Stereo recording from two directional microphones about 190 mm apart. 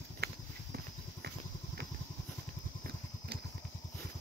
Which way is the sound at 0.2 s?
55° right (ahead or behind).